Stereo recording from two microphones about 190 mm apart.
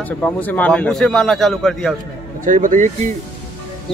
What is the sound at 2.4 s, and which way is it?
Speech, 40° right (ahead or behind).